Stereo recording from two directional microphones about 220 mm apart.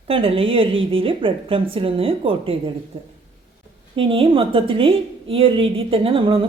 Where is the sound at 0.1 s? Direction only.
25° right (ahead or behind).